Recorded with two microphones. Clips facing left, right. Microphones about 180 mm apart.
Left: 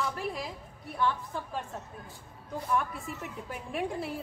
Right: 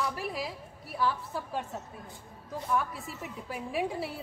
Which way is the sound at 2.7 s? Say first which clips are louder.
Even; centre (ahead or behind).